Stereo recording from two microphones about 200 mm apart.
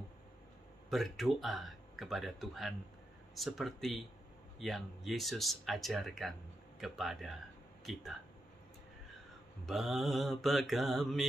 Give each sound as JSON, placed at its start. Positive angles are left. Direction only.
{"t": 0.8, "sound": "speech", "side_deg": 0}
{"t": 9.7, "sound": "speech", "side_deg": 0}